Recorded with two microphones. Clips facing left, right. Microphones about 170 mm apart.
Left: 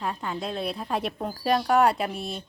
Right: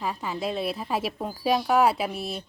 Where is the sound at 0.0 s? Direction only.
5° right (ahead or behind).